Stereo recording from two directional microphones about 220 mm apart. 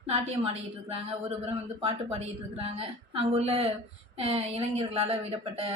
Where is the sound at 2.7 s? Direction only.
25° right (ahead or behind).